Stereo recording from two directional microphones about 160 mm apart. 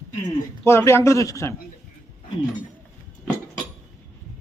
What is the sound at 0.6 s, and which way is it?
Speech, 15° left (ahead or behind).